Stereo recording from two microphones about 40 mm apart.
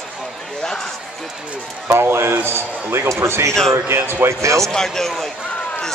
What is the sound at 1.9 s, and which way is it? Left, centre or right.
A man's voice, right.